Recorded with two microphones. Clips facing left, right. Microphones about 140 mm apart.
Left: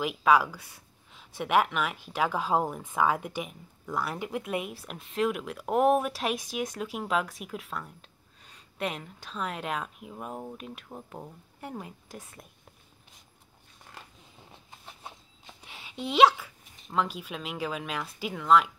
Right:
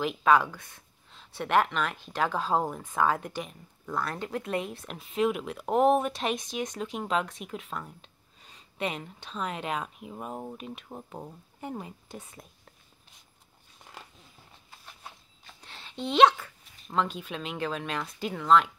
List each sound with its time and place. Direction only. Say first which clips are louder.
0.0 s speech: even; 5° left (ahead or behind)
14.9 s vehicle: left 2 dB; 20° left (ahead or behind)
15.6 s a sound: right 1 dB; 10° left (ahead or behind)
16.9 s speech: right 1 dB; 5° left (ahead or behind)